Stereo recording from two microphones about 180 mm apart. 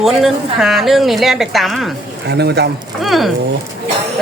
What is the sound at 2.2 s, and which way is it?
Speech, 65° right (ahead or behind).